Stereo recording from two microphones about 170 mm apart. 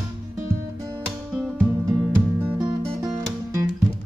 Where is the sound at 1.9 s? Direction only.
10° right (ahead or behind).